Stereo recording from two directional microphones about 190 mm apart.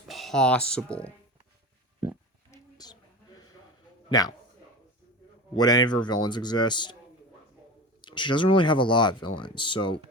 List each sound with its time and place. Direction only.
0.1 s speech: centre (ahead or behind)
2.5 s a sound: 20° left (ahead or behind)
5.5 s speech: 20° left (ahead or behind)
8.0 s speech: 25° left (ahead or behind)